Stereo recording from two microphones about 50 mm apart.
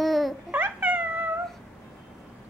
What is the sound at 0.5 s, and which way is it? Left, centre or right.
Cat, right.